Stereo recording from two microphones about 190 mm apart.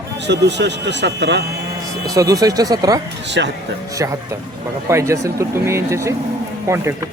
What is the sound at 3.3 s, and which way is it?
Speech, 70° right (ahead or behind).